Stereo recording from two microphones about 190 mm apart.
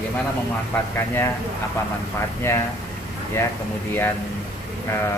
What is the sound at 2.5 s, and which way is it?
Speech, 15° left (ahead or behind).